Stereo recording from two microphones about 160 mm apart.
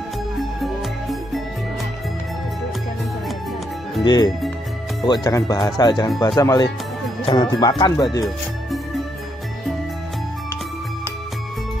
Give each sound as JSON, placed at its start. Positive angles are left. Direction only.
{"t": 4.0, "sound": "speech", "side_deg": 25}